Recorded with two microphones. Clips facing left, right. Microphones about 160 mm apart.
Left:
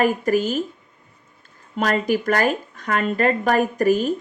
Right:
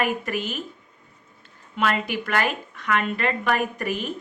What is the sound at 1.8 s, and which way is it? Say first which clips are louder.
Speech: left 4 dB; 40° left (ahead or behind).